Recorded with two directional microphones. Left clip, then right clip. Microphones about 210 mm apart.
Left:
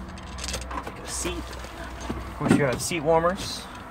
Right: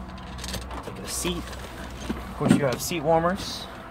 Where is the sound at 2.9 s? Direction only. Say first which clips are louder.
Right 1 dB; 15° right (ahead or behind).